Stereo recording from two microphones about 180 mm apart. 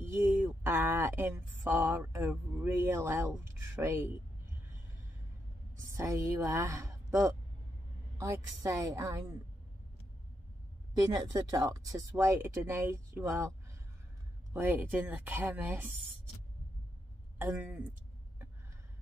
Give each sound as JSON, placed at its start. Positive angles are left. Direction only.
{"t": 0.0, "sound": "a sound", "side_deg": -15}
{"t": 0.5, "sound": "speech", "side_deg": -10}
{"t": 5.9, "sound": "a woman's voice", "side_deg": -15}
{"t": 11.0, "sound": "speech", "side_deg": -20}
{"t": 14.5, "sound": "speech", "side_deg": -10}
{"t": 17.4, "sound": "speech", "side_deg": -10}